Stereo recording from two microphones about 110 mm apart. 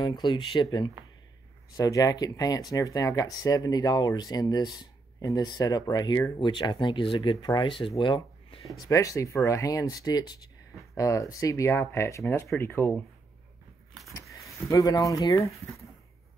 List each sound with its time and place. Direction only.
0.0 s speech: 40° left (ahead or behind)
8.0 s a sound: 50° left (ahead or behind)
8.8 s speech: 30° left (ahead or behind)
14.7 s speech: 30° left (ahead or behind)